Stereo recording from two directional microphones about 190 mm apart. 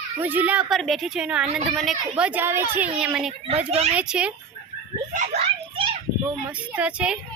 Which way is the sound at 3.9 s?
5° right (ahead or behind).